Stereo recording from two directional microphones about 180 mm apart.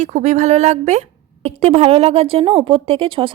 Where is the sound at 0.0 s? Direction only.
40° right (ahead or behind).